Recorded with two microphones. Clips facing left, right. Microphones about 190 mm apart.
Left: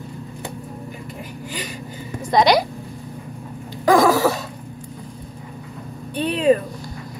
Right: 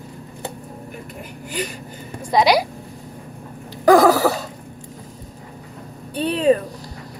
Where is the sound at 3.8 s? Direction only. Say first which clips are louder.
Right 2 dB; 40° right (ahead or behind).